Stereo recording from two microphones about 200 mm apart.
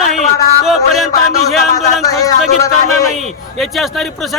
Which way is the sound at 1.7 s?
15° left (ahead or behind).